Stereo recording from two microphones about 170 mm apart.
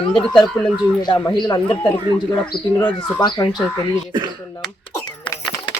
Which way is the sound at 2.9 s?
25° left (ahead or behind).